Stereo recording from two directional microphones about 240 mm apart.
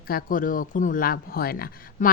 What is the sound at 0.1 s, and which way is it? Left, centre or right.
Speech, left.